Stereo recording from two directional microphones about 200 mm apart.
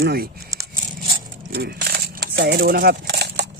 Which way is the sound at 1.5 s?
55° right (ahead or behind).